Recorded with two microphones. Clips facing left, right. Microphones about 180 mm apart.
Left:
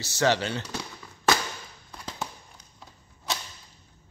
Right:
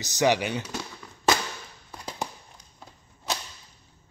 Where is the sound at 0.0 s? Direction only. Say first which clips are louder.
Right 1 dB; 15° right (ahead or behind).